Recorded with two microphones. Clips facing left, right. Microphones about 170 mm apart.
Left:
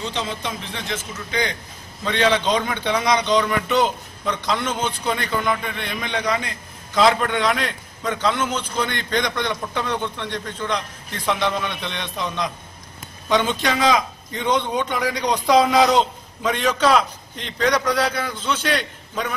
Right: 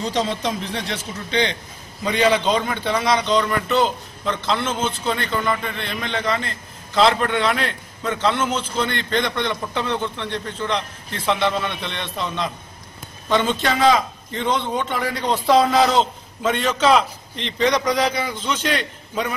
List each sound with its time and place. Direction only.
0.0 s a man's voice: 35° right (ahead or behind)
2.0 s a man's voice: 10° right (ahead or behind)
8.2 s a man's voice: 10° left (ahead or behind)
11.2 s a man's voice: 5° right (ahead or behind)
17.8 s a man's voice: 10° right (ahead or behind)